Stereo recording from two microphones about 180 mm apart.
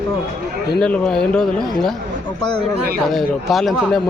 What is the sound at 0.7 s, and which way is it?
Speech, 5° left (ahead or behind).